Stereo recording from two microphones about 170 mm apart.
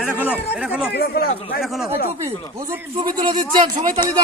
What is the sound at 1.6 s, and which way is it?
Speech, centre (ahead or behind).